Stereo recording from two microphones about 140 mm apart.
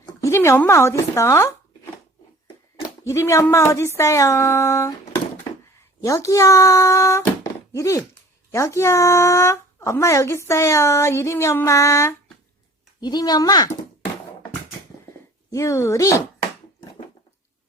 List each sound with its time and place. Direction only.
0.0 s speech: 20° left (ahead or behind)
3.1 s speech: 20° left (ahead or behind)
6.0 s speech: 20° left (ahead or behind)
15.4 s speech: 20° left (ahead or behind)